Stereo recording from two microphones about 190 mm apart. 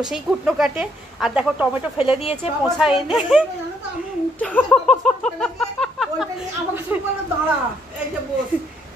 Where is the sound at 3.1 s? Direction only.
Centre (ahead or behind).